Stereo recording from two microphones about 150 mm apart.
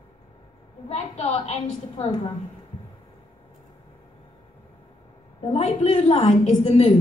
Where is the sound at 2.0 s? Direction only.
35° left (ahead or behind).